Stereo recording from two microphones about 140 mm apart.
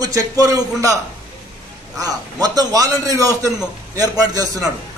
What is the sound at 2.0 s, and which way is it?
A man's voice, 25° right (ahead or behind).